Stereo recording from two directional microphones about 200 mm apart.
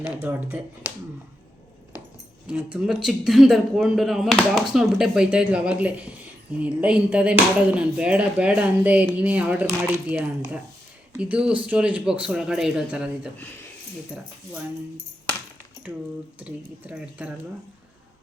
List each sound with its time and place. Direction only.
0.0 s speech: 10° right (ahead or behind)
2.5 s speech: 5° right (ahead or behind)
15.9 s speech: 5° right (ahead or behind)